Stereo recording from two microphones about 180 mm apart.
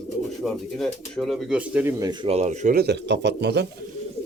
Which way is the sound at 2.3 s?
40° right (ahead or behind).